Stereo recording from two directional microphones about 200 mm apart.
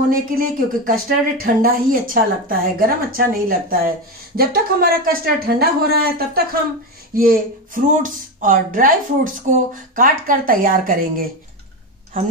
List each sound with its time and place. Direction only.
0.1 s speech: 45° right (ahead or behind)